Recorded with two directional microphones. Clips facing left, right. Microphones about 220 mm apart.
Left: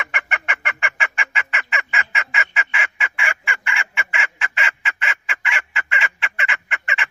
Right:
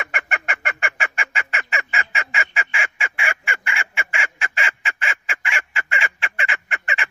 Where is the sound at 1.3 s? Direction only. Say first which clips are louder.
Even; 40° right (ahead or behind).